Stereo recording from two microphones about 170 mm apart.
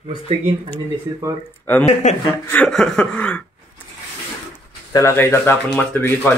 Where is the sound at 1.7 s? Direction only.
10° left (ahead or behind).